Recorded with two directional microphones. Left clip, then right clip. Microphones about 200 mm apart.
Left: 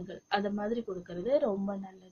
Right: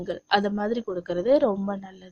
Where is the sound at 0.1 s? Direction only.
45° right (ahead or behind).